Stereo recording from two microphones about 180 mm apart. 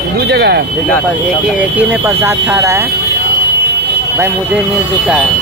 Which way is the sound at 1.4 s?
10° right (ahead or behind).